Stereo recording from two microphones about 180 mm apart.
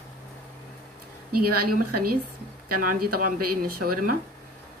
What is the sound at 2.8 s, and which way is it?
Speech, 50° right (ahead or behind).